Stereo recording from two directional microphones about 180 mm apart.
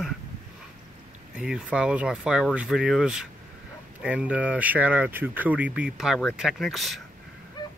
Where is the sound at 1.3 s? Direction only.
5° right (ahead or behind).